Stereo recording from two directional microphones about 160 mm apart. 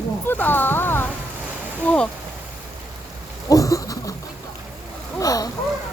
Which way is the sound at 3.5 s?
20° left (ahead or behind).